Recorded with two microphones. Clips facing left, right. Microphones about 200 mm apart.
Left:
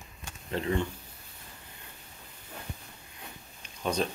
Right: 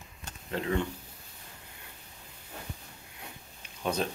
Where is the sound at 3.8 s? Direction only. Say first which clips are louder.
Left 1 dB; 5° right (ahead or behind).